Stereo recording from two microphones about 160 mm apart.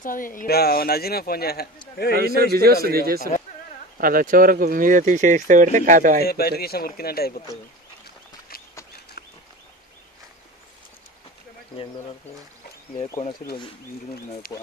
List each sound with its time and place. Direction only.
0.0 s speech: 60° left (ahead or behind); by 1.7 s 75° left (ahead or behind)
2.1 s a man's voice: 75° right (ahead or behind); by 6.1 s 55° right (ahead or behind)
6.2 s speech: 75° left (ahead or behind)
14.4 s speech: 70° left (ahead or behind)